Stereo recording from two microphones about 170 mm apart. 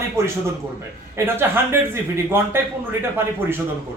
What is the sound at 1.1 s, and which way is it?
Speech, 15° right (ahead or behind).